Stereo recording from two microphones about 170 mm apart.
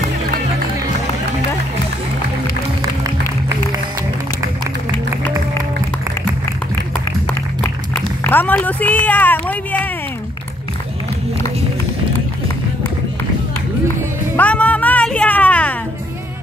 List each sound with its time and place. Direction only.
2.8 s music: 20° right (ahead or behind)
8.2 s a sound: 10° left (ahead or behind)
14.3 s music: 10° left (ahead or behind)